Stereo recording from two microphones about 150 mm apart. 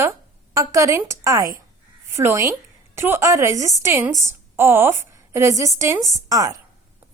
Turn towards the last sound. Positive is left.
turn(degrees=-25)  # may be behind; listen again after turning